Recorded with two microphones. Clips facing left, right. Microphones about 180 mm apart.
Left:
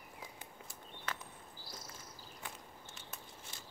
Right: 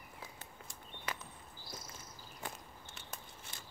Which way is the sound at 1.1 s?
10° right (ahead or behind).